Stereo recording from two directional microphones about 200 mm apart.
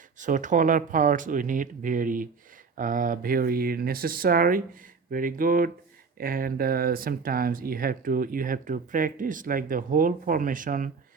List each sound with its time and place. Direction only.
0.2 s speech: 40° right (ahead or behind)